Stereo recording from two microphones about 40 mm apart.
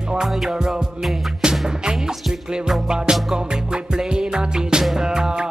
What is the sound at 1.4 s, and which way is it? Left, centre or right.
Music, centre.